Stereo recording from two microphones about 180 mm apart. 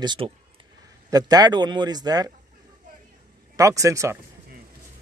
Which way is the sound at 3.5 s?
20° right (ahead or behind).